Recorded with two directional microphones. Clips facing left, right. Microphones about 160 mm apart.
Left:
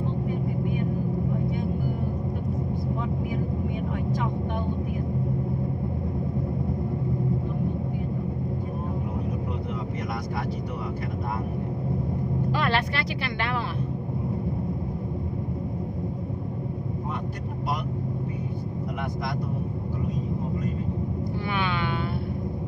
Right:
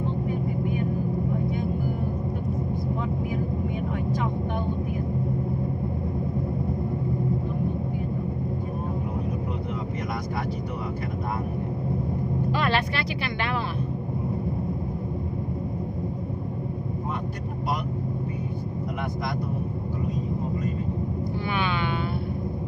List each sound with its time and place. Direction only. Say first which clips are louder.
12.5 s speech: right 1 dB; 15° right (ahead or behind)
21.5 s music: right 1 dB; 20° right (ahead or behind)